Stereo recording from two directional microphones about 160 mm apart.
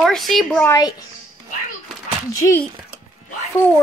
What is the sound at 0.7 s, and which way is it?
Speech, 25° left (ahead or behind).